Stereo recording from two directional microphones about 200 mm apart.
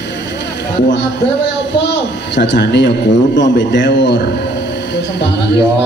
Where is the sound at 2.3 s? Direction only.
60° left (ahead or behind).